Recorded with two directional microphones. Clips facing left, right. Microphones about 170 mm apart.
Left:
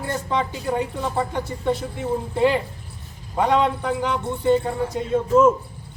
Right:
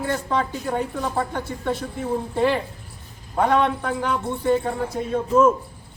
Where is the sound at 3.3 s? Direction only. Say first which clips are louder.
Even; 10° left (ahead or behind).